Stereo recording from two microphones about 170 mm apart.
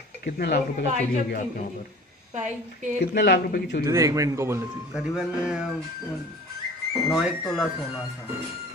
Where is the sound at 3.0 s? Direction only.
70° left (ahead or behind).